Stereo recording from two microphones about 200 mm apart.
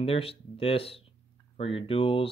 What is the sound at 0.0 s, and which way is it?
Speech, 30° left (ahead or behind).